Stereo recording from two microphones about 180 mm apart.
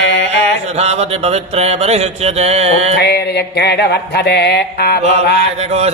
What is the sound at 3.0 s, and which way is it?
Mantra, 65° left (ahead or behind).